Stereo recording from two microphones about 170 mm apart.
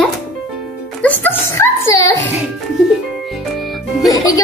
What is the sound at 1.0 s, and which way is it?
A child's voice, 10° left (ahead or behind).